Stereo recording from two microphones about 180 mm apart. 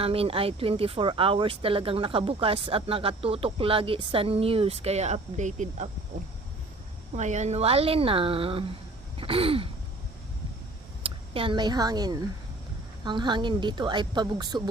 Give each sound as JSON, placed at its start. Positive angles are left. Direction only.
{"t": 0.0, "sound": "speech", "side_deg": -30}
{"t": 7.2, "sound": "speech", "side_deg": -40}
{"t": 9.1, "sound": "gasp", "side_deg": -30}
{"t": 11.0, "sound": "a woman's voice", "side_deg": -30}